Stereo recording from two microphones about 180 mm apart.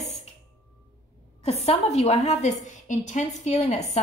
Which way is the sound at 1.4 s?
35° left (ahead or behind).